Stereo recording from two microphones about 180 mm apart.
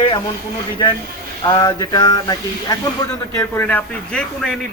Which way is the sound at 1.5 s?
20° left (ahead or behind).